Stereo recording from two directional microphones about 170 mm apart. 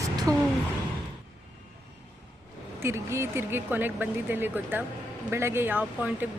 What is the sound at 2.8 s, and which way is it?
Speech, 15° right (ahead or behind).